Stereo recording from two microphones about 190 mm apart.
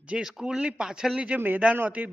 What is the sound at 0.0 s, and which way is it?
Speech, 5° right (ahead or behind).